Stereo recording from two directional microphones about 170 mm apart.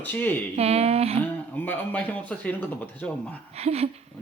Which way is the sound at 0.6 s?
35° right (ahead or behind).